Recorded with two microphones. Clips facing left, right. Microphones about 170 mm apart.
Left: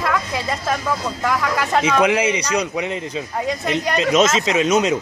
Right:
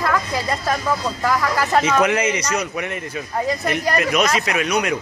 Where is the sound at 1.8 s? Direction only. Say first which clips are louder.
Left 1 dB; 10° left (ahead or behind).